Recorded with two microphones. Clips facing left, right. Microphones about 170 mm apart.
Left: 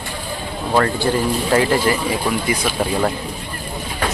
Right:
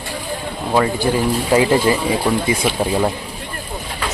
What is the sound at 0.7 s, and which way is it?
Speech, 10° right (ahead or behind).